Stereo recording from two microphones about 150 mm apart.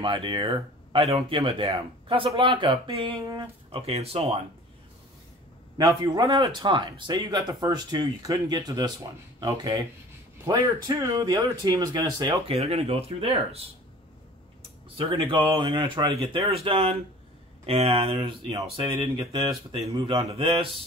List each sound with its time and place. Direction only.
0.0 s speech: 35° right (ahead or behind)
5.8 s speech: 25° right (ahead or behind)
12.5 s speech: 45° right (ahead or behind)
15.0 s speech: 35° right (ahead or behind)